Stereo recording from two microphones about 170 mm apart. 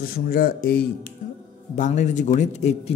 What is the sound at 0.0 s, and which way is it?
Speech, 60° left (ahead or behind).